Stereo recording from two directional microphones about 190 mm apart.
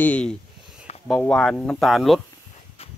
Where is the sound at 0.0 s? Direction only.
5° left (ahead or behind).